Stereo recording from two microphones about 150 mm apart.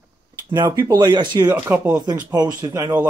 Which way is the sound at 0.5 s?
20° right (ahead or behind).